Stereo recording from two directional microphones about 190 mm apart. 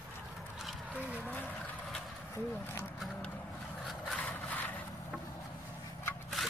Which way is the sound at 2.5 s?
10° left (ahead or behind).